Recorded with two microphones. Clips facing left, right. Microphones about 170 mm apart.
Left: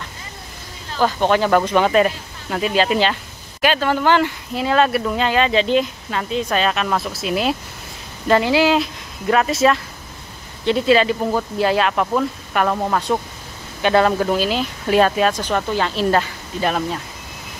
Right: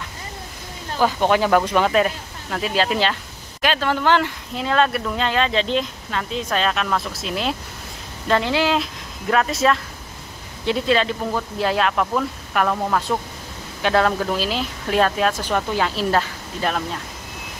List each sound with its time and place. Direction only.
1.0 s speech: 5° right (ahead or behind)